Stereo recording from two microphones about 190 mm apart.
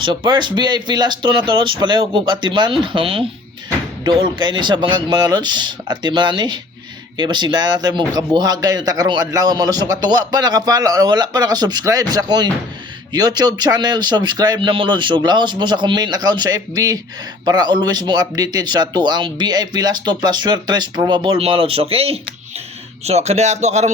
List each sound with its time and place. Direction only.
0.0 s a man's voice: 25° right (ahead or behind)